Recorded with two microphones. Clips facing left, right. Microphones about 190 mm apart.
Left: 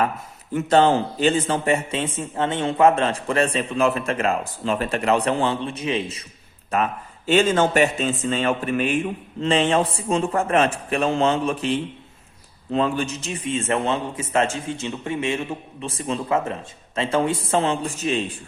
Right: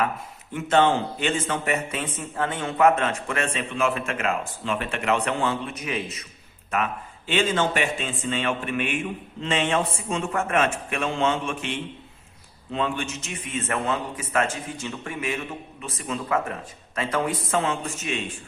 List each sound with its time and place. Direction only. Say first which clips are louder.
0.5 s a man's voice: left 3 dB; 40° left (ahead or behind)
7.3 s a man's voice: left 5 dB; 45° left (ahead or behind)